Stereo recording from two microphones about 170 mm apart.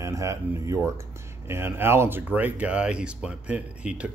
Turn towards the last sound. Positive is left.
turn(degrees=-5)  # may be behind; listen again after turning